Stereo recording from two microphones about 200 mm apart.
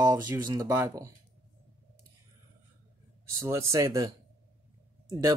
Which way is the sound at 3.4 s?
15° right (ahead or behind).